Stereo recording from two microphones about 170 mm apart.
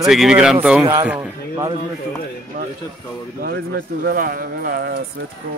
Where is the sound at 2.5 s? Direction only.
50° right (ahead or behind).